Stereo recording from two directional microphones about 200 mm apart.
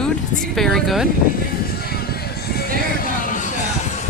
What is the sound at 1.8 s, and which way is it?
Music, 50° left (ahead or behind).